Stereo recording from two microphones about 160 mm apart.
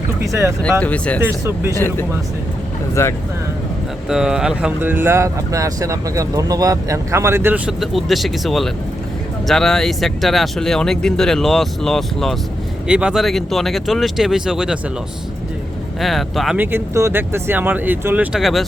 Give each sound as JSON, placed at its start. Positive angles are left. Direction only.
{"t": 0.2, "sound": "speech", "side_deg": -15}
{"t": 0.6, "sound": "speech", "side_deg": 10}
{"t": 1.2, "sound": "speech", "side_deg": -15}
{"t": 1.7, "sound": "speech", "side_deg": 15}
{"t": 4.1, "sound": "speech", "side_deg": -5}
{"t": 7.7, "sound": "speech", "side_deg": 0}
{"t": 16.0, "sound": "speech", "side_deg": 0}
{"t": 16.6, "sound": "speech", "side_deg": -15}